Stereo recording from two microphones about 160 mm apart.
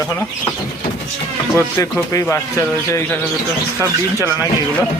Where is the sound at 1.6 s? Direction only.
15° left (ahead or behind).